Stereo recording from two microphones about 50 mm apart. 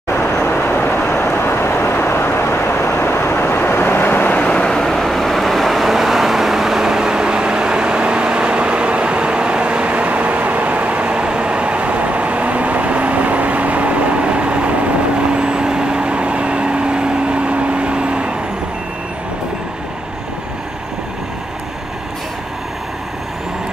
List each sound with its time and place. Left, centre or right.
0.1 s vehicle: left
4.5 s vehicle: centre; by 18.3 s right